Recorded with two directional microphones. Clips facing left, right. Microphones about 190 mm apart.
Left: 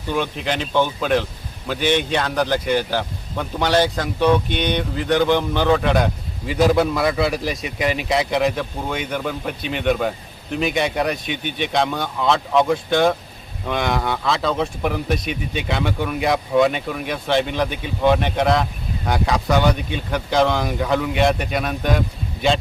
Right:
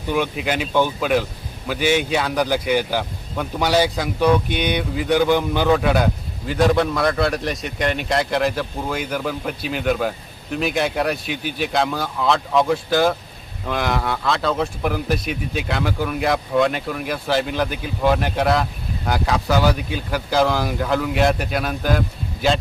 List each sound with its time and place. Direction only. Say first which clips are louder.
0.1 s a man's voice: right 1 dB; 10° right (ahead or behind)